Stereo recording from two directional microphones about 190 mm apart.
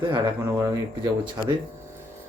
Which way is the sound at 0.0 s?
20° right (ahead or behind).